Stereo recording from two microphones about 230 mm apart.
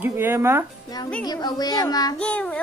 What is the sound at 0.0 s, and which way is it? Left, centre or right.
Speech, centre.